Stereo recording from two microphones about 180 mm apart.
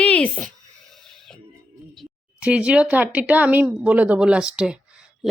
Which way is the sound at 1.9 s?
5° right (ahead or behind).